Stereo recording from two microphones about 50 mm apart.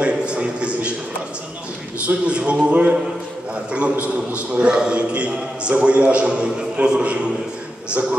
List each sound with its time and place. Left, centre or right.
0.0 s a sound: right
2.0 s a man's voice: right
4.0 s a man's voice: right